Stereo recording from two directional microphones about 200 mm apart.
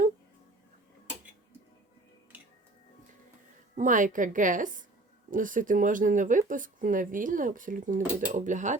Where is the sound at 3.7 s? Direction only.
40° right (ahead or behind).